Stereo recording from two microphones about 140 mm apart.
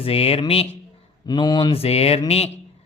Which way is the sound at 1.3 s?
30° left (ahead or behind).